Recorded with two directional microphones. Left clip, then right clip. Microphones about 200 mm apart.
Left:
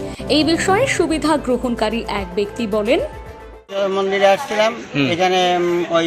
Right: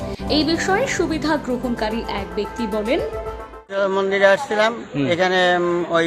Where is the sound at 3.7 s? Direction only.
20° right (ahead or behind).